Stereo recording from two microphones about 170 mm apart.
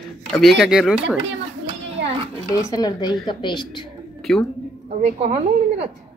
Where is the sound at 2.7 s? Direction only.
25° left (ahead or behind).